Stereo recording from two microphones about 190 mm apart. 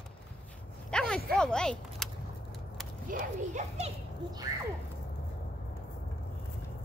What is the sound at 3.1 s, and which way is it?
Speech, 40° right (ahead or behind).